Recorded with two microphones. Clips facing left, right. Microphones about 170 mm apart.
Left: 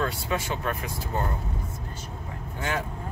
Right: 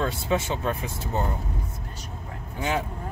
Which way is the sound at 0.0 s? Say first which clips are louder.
Right 3 dB; 25° right (ahead or behind).